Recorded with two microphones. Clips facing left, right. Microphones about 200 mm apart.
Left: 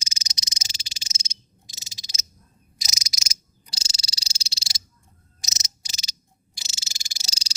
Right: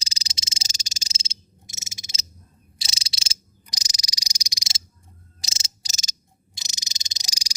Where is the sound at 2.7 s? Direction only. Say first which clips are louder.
Left 1 dB; 30° right (ahead or behind).